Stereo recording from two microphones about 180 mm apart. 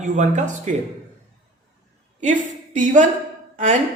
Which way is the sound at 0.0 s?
45° right (ahead or behind).